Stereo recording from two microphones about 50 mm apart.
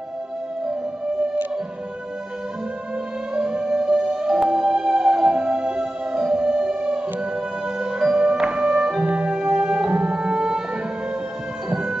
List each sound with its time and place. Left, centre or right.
3.3 s music: centre
11.7 s music: centre